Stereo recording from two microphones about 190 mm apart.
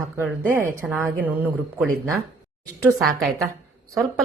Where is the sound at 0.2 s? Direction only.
10° right (ahead or behind).